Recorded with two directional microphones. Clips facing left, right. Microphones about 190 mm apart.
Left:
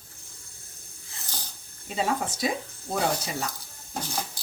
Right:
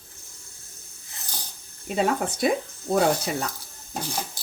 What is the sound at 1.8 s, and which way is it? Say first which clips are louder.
Speech: right 4 dB; 60° right (ahead or behind).